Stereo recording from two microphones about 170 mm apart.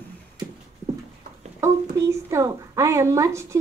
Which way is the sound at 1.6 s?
15° right (ahead or behind).